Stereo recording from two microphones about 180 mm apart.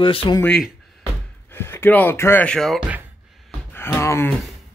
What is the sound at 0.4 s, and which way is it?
Speech, 5° left (ahead or behind).